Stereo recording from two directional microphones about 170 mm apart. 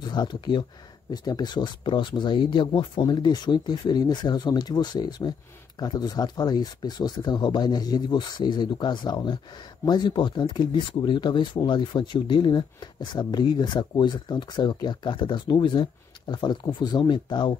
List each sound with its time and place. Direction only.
0.0 s speech: 25° left (ahead or behind)